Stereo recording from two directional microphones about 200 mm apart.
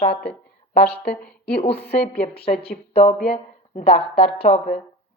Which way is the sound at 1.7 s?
55° left (ahead or behind).